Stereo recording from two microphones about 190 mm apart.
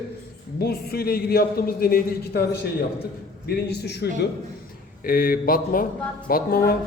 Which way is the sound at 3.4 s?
60° left (ahead or behind).